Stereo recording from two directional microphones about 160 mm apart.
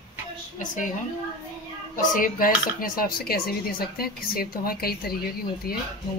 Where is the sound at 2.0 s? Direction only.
55° left (ahead or behind).